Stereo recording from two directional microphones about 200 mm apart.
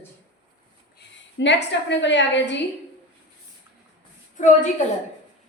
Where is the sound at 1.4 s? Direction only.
60° left (ahead or behind).